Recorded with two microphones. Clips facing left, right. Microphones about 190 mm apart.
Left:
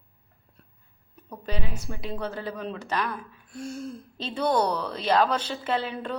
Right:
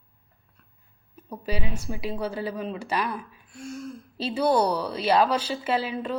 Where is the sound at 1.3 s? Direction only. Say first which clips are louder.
Right 3 dB; 10° right (ahead or behind).